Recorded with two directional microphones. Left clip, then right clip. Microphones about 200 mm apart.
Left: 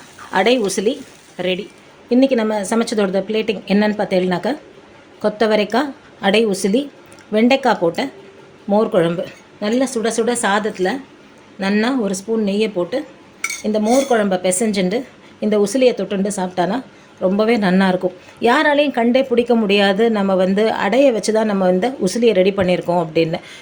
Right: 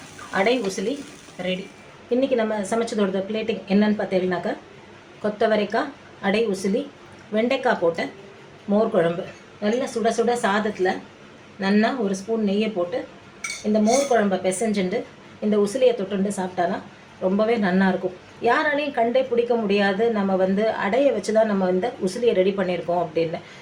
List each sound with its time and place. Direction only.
0.3 s speech: 55° left (ahead or behind)
2.0 s a woman's voice: 45° left (ahead or behind)
14.1 s a woman's voice: 50° left (ahead or behind)